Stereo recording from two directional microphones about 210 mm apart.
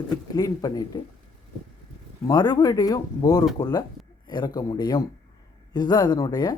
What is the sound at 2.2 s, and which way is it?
A man's voice, 20° left (ahead or behind).